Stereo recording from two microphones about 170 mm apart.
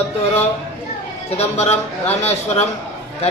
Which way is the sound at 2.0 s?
40° left (ahead or behind).